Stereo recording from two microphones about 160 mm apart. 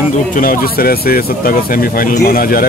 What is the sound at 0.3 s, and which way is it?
Speech, 60° left (ahead or behind).